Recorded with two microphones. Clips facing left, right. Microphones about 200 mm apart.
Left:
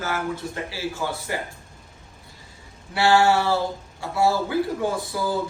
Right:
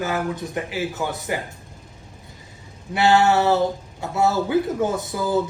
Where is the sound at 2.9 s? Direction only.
20° right (ahead or behind).